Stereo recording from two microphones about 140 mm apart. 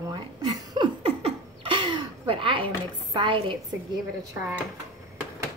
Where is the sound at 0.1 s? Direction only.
30° right (ahead or behind).